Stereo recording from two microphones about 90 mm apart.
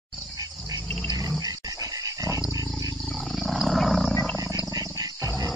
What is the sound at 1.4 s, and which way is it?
Dog, 40° right (ahead or behind).